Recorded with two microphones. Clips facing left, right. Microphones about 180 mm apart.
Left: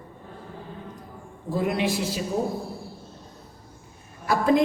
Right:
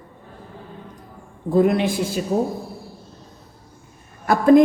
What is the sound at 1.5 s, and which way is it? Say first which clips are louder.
Speech: right 7 dB; 50° right (ahead or behind).